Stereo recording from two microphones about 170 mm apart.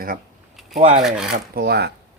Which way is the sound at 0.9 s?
5° right (ahead or behind).